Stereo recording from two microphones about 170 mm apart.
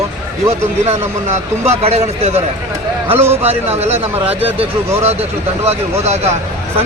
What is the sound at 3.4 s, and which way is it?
Speech, 40° right (ahead or behind).